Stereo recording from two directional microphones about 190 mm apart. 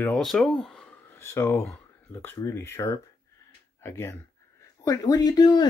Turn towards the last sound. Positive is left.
turn(degrees=20)  # may be behind; listen again after turning